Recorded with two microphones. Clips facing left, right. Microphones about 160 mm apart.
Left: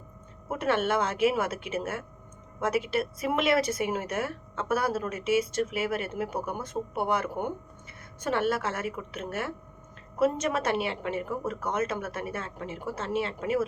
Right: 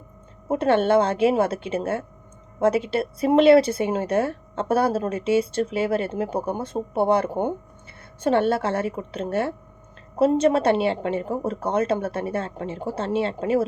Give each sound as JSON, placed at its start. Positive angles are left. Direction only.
{"t": 0.4, "sound": "speech", "side_deg": -30}